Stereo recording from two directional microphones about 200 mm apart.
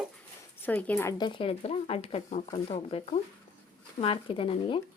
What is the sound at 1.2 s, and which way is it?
Speech, 25° left (ahead or behind).